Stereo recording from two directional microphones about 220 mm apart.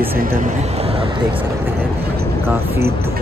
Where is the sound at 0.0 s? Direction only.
40° right (ahead or behind); by 1.4 s 25° right (ahead or behind).